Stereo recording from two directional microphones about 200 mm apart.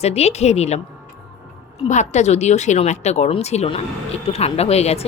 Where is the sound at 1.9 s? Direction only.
35° left (ahead or behind).